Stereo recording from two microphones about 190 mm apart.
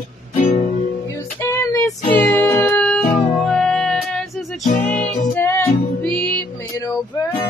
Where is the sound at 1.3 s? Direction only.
15° left (ahead or behind).